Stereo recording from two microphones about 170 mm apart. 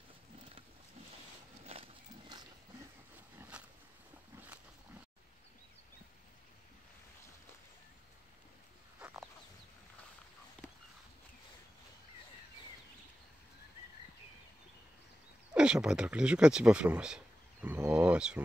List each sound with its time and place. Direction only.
1.7 s horse: 30° right (ahead or behind)
3.2 s a sound: 10° right (ahead or behind)
9.0 s chicken: centre (ahead or behind)
15.5 s speech: 5° right (ahead or behind)